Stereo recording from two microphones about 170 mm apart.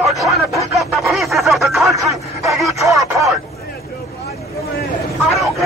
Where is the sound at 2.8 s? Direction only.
20° right (ahead or behind).